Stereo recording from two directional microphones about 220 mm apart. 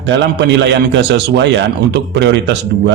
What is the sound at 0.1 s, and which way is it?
A man's voice, 55° right (ahead or behind).